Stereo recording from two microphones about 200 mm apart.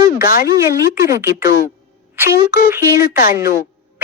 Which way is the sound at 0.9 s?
15° right (ahead or behind).